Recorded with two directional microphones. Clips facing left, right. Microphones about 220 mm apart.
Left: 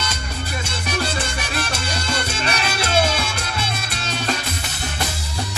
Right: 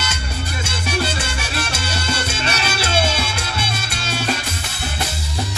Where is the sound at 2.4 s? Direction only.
25° right (ahead or behind).